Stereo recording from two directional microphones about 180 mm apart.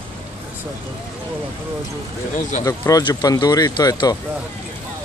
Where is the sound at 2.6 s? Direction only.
20° left (ahead or behind).